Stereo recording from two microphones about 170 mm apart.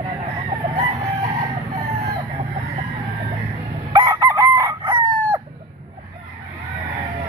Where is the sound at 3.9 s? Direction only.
25° right (ahead or behind).